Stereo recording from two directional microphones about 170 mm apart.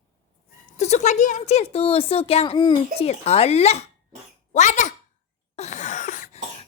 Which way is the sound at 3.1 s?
40° left (ahead or behind).